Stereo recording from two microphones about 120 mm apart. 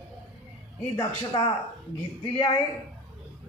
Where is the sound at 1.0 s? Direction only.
40° left (ahead or behind).